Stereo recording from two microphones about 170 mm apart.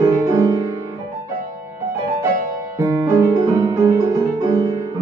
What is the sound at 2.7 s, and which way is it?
Music, 15° right (ahead or behind).